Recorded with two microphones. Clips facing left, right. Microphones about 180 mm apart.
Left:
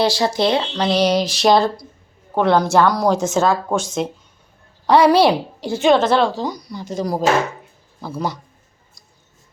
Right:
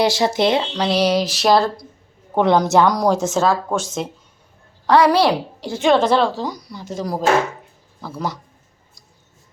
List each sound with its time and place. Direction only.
0.0 s speech: 20° right (ahead or behind); by 1.7 s centre (ahead or behind)
2.3 s speech: 15° right (ahead or behind)
3.2 s speech: centre (ahead or behind)
4.9 s a woman's voice: 25° left (ahead or behind)
5.7 s speech: 5° left (ahead or behind)